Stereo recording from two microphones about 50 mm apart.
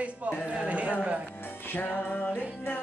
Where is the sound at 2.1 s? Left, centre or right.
Left.